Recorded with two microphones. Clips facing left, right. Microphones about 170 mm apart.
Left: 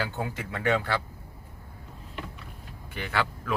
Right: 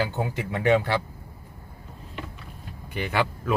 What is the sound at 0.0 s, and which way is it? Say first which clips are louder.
Speech: right 5 dB; 20° right (ahead or behind).